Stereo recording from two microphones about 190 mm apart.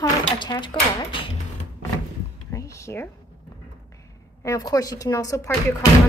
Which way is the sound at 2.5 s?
15° left (ahead or behind).